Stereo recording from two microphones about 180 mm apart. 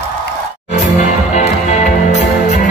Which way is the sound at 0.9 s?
40° left (ahead or behind).